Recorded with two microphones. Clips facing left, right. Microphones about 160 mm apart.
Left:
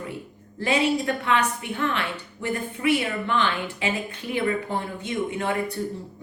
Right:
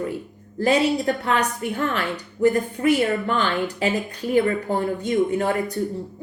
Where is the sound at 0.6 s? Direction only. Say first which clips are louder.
Right 4 dB; 35° right (ahead or behind).